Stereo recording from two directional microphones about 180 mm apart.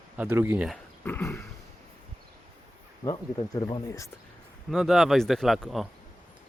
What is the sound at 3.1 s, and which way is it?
Speech, 25° left (ahead or behind).